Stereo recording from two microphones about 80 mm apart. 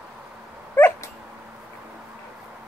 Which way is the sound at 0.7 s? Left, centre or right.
Left.